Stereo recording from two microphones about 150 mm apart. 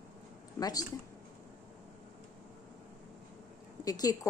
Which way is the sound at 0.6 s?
25° left (ahead or behind).